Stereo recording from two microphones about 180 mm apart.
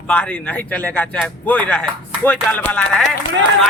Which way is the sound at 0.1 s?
5° left (ahead or behind).